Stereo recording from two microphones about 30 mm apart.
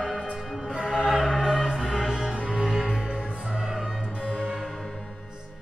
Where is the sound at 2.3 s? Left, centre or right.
Right.